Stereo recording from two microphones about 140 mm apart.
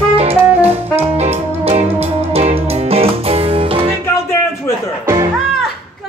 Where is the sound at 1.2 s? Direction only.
50° right (ahead or behind).